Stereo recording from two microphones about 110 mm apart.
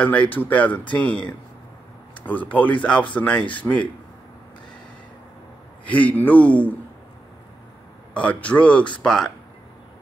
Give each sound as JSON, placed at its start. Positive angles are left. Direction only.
{"t": 0.0, "sound": "speech", "side_deg": 15}
{"t": 2.1, "sound": "a sound", "side_deg": 15}
{"t": 2.5, "sound": "speech", "side_deg": 15}
{"t": 5.9, "sound": "speech", "side_deg": 15}
{"t": 8.1, "sound": "speech", "side_deg": 10}